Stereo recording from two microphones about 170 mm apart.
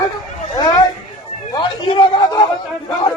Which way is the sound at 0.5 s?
25° left (ahead or behind).